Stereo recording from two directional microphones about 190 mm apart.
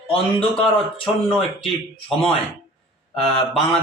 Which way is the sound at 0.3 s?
5° left (ahead or behind).